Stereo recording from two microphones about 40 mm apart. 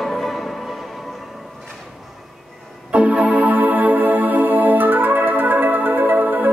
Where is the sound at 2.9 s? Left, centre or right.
Right.